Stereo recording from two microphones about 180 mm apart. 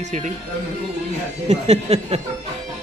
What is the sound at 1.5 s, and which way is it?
Speech, 35° right (ahead or behind).